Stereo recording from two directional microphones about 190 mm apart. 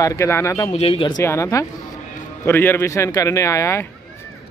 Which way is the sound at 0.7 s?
30° left (ahead or behind).